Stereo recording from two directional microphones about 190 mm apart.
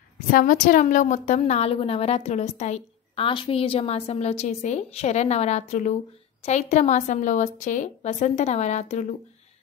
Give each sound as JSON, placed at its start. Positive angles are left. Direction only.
{"t": 0.3, "sound": "a woman's voice", "side_deg": 45}